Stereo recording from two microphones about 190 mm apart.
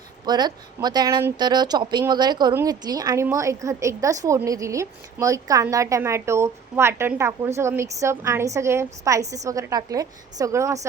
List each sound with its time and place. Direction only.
0.3 s a woman's voice: 20° right (ahead or behind)